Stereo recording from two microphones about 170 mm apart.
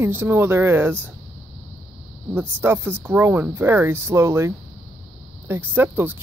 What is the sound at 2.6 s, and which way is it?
A woman's voice, 15° right (ahead or behind).